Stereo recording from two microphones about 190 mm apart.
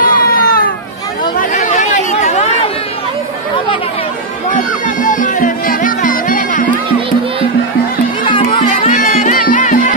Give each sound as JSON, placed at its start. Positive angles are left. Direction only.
{"t": 0.0, "sound": "cat", "side_deg": 45}
{"t": 1.5, "sound": "a sound", "side_deg": 40}
{"t": 5.0, "sound": "music", "side_deg": 45}
{"t": 8.3, "sound": "music", "side_deg": 25}
{"t": 8.7, "sound": "music", "side_deg": 45}